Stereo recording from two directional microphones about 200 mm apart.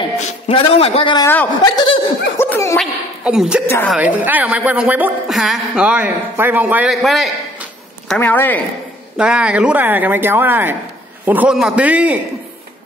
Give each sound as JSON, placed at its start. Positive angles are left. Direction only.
{"t": 0.2, "sound": "speech", "side_deg": 30}
{"t": 1.2, "sound": "speech", "side_deg": 10}
{"t": 1.6, "sound": "snicker", "side_deg": 25}
{"t": 2.3, "sound": "a sound", "side_deg": 10}
{"t": 2.8, "sound": "speech", "side_deg": -5}
{"t": 3.6, "sound": "speech", "side_deg": 10}
{"t": 3.9, "sound": "a woman's voice", "side_deg": -5}
{"t": 9.1, "sound": "a woman's voice", "side_deg": -5}